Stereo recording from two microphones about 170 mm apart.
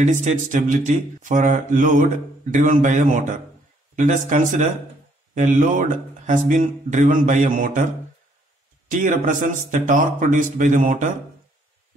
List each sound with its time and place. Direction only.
0.0 s speech: 45° right (ahead or behind)
8.8 s speech: 50° right (ahead or behind)